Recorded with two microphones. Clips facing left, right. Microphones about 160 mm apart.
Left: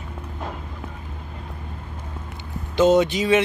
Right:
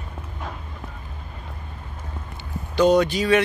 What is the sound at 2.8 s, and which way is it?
Speech, 20° left (ahead or behind).